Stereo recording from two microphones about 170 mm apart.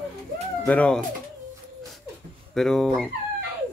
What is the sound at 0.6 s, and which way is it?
Speech, 10° left (ahead or behind).